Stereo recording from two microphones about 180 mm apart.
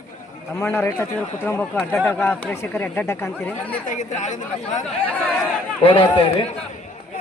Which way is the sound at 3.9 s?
40° left (ahead or behind).